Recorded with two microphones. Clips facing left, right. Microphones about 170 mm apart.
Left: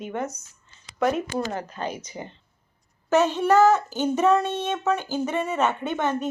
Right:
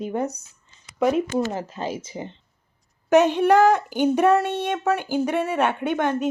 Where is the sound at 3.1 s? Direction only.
15° right (ahead or behind).